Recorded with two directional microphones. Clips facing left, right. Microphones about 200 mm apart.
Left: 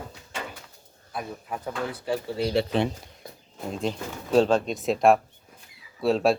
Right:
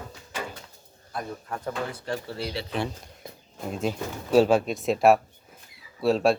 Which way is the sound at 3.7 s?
5° right (ahead or behind).